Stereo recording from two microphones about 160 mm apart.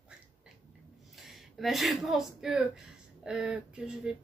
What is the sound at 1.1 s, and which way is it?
A woman's voice, centre (ahead or behind).